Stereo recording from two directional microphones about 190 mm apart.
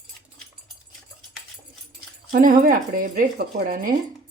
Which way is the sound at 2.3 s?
45° right (ahead or behind).